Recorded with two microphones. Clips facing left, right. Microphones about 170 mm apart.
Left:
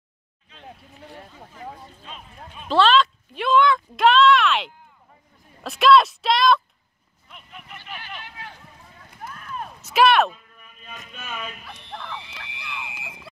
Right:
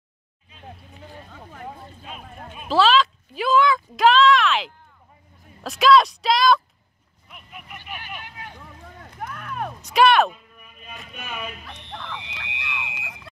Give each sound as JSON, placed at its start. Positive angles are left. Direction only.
{"t": 2.7, "sound": "a sound", "side_deg": -5}
{"t": 5.6, "sound": "speech", "side_deg": 0}
{"t": 7.2, "sound": "vehicle", "side_deg": -5}
{"t": 8.5, "sound": "a sound", "side_deg": -65}
{"t": 9.8, "sound": "speech", "side_deg": 5}
{"t": 11.2, "sound": "speech", "side_deg": -10}
{"t": 11.6, "sound": "speech", "side_deg": 5}